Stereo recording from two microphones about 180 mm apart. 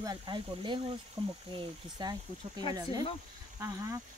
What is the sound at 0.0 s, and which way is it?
Speech, 25° right (ahead or behind).